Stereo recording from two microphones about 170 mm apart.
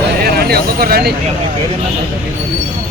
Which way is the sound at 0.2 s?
65° right (ahead or behind).